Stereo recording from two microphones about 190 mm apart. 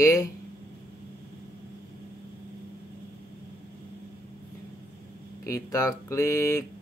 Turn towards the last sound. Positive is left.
turn(degrees=15)  # may be behind; listen again after turning